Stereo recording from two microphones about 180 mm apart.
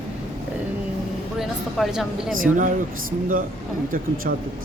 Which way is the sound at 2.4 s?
50° right (ahead or behind).